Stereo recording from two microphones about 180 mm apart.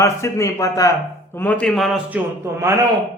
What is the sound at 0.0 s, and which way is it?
A man's voice, 15° left (ahead or behind).